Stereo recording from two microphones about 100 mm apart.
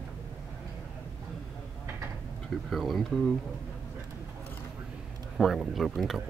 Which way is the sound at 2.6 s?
Centre (ahead or behind).